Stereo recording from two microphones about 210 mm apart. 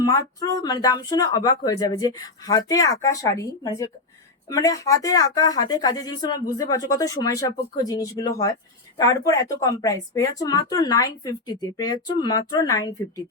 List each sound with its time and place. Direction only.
0.0 s a woman's voice: 15° left (ahead or behind)